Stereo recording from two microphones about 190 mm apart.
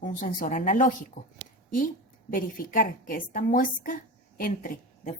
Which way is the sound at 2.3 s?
45° left (ahead or behind).